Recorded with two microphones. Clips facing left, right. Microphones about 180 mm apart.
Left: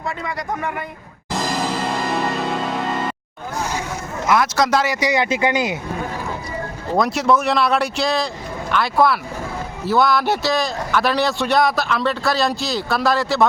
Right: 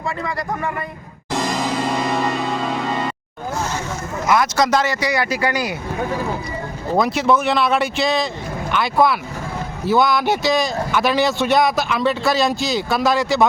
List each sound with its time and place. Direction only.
4.3 s speech: centre (ahead or behind)
4.9 s speech: 20° left (ahead or behind)
6.9 s speech: centre (ahead or behind)